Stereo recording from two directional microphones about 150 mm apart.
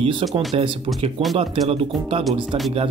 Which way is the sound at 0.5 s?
40° right (ahead or behind).